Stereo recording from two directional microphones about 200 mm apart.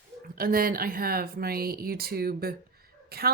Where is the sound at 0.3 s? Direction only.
45° right (ahead or behind).